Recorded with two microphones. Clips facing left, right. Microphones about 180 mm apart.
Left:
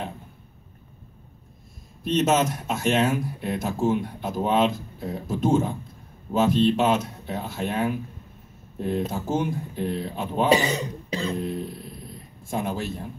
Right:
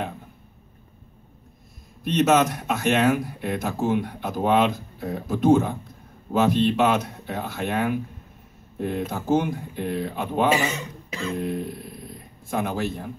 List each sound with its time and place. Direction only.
2.0 s speech: 60° right (ahead or behind)
10.5 s speech: 35° left (ahead or behind)
11.4 s speech: 55° right (ahead or behind)